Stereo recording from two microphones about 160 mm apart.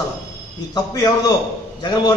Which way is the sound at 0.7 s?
20° left (ahead or behind).